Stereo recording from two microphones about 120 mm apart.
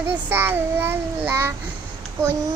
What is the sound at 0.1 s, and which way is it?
Child singing, 15° right (ahead or behind).